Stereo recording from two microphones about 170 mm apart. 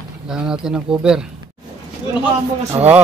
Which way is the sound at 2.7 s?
30° right (ahead or behind).